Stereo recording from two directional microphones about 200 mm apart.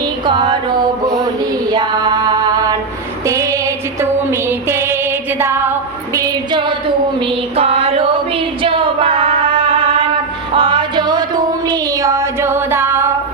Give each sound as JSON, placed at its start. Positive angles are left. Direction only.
{"t": 0.3, "sound": "music", "side_deg": -25}
{"t": 1.7, "sound": "female singing", "side_deg": -20}
{"t": 4.0, "sound": "music", "side_deg": -10}
{"t": 5.4, "sound": "a sound", "side_deg": -10}
{"t": 8.6, "sound": "female singing", "side_deg": -25}
{"t": 10.5, "sound": "music", "side_deg": -25}
{"t": 11.7, "sound": "child singing", "side_deg": -15}